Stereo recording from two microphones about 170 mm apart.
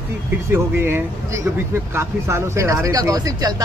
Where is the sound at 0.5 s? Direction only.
15° right (ahead or behind).